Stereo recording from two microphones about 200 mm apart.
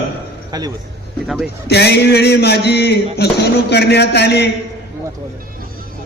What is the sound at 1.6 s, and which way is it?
A man's voice, 55° left (ahead or behind).